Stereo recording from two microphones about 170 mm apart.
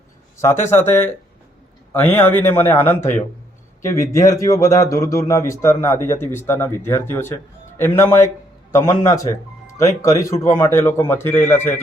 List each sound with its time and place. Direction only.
0.7 s a man's voice: 15° left (ahead or behind)